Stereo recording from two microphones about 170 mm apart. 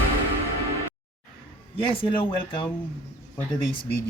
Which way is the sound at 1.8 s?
30° left (ahead or behind).